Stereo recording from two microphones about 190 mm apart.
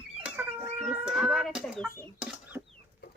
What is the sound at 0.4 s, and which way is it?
Cat, 10° right (ahead or behind).